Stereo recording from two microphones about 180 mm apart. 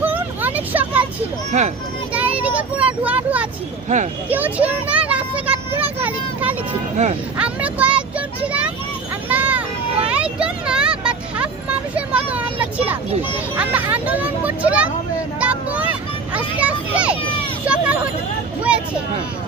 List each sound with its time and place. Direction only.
0.0 s vehicle: 10° right (ahead or behind)
2.1 s speech: 10° right (ahead or behind)
3.8 s speech: 40° right (ahead or behind)
4.3 s a sound: 10° right (ahead or behind)
7.3 s a child's voice: 5° right (ahead or behind)
9.3 s a sound: 10° right (ahead or behind)
10.1 s vehicle: 5° right (ahead or behind)
11.9 s a child's voice: 10° right (ahead or behind)